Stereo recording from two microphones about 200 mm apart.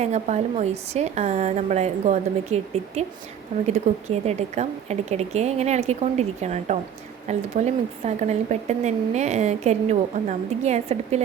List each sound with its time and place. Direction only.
0.0 s speech: 35° right (ahead or behind)